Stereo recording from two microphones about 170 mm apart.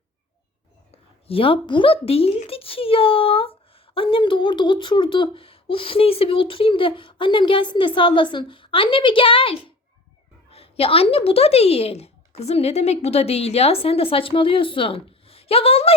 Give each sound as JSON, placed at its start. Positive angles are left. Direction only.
{"t": 0.9, "sound": "a woman's voice", "side_deg": 35}